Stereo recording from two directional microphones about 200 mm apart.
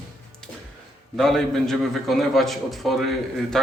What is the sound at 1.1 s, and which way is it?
A man's voice, centre (ahead or behind).